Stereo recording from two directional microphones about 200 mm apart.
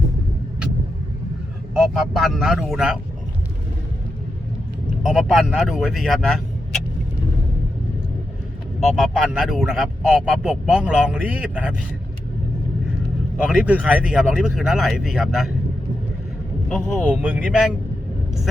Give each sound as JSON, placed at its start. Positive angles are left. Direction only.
{"t": 1.7, "sound": "speech", "side_deg": 0}
{"t": 5.1, "sound": "speech", "side_deg": -5}
{"t": 8.8, "sound": "speech", "side_deg": 0}
{"t": 13.3, "sound": "speech", "side_deg": -5}
{"t": 16.6, "sound": "speech", "side_deg": 5}
{"t": 17.2, "sound": "speech", "side_deg": -5}